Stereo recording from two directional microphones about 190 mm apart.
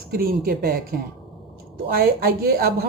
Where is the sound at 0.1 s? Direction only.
50° right (ahead or behind).